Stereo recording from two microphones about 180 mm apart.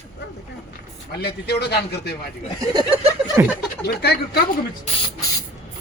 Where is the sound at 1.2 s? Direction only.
65° left (ahead or behind).